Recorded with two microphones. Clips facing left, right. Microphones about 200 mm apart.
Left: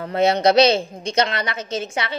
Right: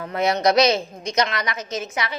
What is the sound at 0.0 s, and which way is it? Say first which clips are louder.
A woman's voice: left 3 dB; 30° left (ahead or behind).